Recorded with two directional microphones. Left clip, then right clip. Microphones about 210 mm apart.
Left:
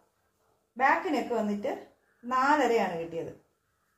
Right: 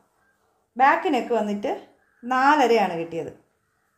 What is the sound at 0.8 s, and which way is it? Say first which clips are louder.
Speech: right 7 dB; 60° right (ahead or behind).